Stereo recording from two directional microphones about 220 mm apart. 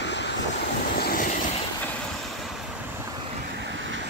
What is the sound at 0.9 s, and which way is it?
Vehicle, 40° left (ahead or behind).